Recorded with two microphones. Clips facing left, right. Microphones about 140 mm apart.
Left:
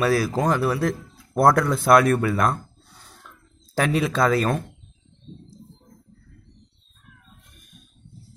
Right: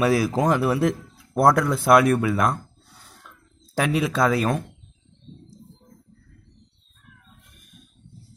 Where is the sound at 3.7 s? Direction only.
5° right (ahead or behind).